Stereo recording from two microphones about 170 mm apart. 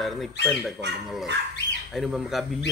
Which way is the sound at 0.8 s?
90° right.